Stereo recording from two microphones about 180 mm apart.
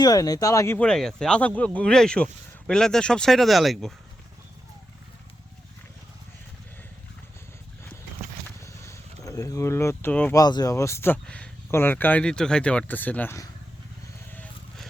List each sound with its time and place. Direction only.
0.0 s speech: 20° left (ahead or behind); by 3.9 s centre (ahead or behind)
8.6 s a sound: 15° left (ahead or behind)
10.4 s speech: 20° left (ahead or behind)